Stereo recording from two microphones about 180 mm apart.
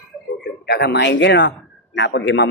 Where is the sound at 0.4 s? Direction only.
65° left (ahead or behind).